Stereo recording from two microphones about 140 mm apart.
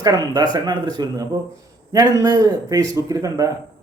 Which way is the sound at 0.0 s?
30° right (ahead or behind).